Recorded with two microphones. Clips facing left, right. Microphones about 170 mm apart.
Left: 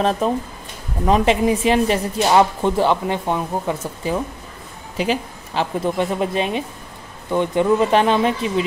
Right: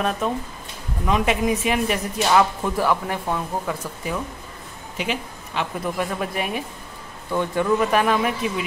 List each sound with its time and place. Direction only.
1.0 s speech: 30° left (ahead or behind)